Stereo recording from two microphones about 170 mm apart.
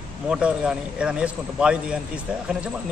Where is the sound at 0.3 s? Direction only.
5° right (ahead or behind).